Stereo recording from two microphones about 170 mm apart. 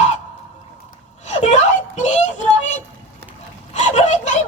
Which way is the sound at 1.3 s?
45° left (ahead or behind).